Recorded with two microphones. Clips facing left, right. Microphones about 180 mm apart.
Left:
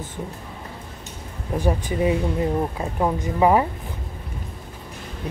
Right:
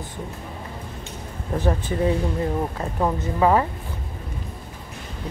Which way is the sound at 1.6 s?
15° left (ahead or behind).